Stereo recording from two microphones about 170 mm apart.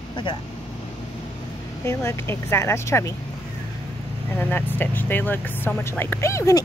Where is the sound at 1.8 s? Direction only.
15° left (ahead or behind).